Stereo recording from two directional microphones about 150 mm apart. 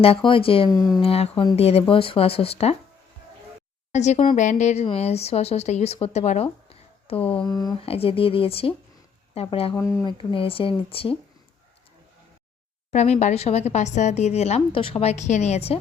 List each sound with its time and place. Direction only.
0.0 s speech: 35° left (ahead or behind)
3.9 s a woman's voice: 50° left (ahead or behind)
7.2 s a sound: 10° left (ahead or behind)
7.4 s speech: 25° left (ahead or behind)
7.9 s speech: 40° left (ahead or behind)
9.7 s speech: 20° left (ahead or behind)
10.1 s speech: 35° left (ahead or behind)
12.9 s a woman's voice: 50° left (ahead or behind)